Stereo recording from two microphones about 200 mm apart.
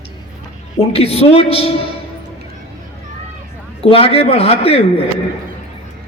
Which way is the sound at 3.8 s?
30° left (ahead or behind).